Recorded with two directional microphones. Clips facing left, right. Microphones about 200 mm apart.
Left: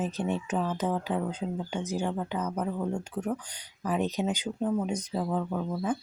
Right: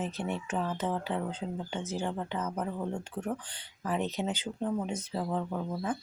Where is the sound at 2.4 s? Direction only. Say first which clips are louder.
Left 3 dB; 5° right (ahead or behind).